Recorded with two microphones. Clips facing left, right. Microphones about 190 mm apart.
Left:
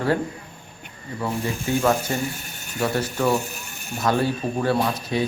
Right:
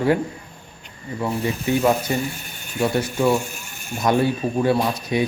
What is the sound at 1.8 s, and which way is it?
Speech, 10° right (ahead or behind).